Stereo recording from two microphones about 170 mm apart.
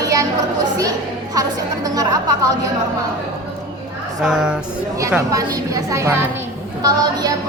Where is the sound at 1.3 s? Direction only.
20° right (ahead or behind).